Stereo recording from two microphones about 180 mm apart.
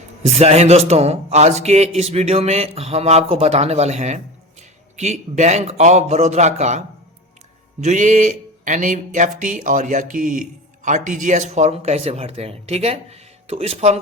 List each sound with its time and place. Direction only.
0.2 s speech: 35° right (ahead or behind)
7.8 s a sound: 40° right (ahead or behind)
10.8 s speech: 45° right (ahead or behind)